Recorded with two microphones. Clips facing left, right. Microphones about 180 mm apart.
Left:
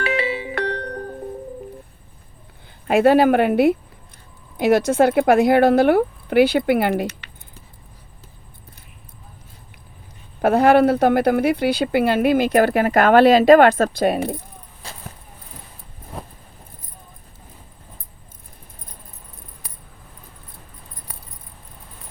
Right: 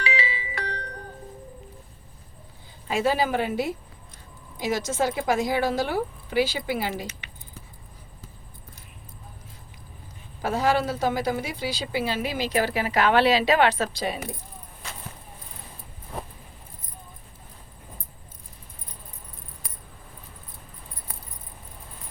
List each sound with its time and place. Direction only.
0.0 s music: 55° left (ahead or behind)
2.8 s speech: 60° left (ahead or behind)
10.4 s speech: 60° left (ahead or behind)
14.8 s a sound: 35° left (ahead or behind)